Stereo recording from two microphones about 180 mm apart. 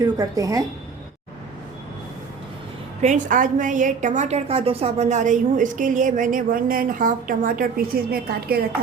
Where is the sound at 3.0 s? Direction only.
45° right (ahead or behind).